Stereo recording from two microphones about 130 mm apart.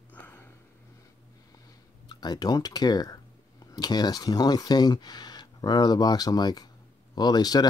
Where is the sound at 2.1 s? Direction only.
30° left (ahead or behind).